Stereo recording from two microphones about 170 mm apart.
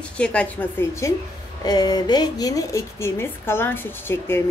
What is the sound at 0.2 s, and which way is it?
A woman's voice, 5° left (ahead or behind).